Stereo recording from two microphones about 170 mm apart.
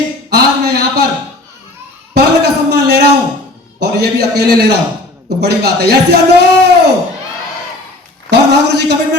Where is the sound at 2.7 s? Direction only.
75° right (ahead or behind).